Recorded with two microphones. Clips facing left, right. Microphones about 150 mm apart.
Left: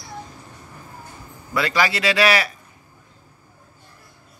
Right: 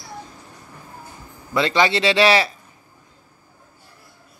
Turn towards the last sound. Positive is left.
turn(degrees=-25)  # may be behind; listen again after turning